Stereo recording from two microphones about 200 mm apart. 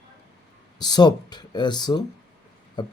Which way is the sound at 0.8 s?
20° left (ahead or behind).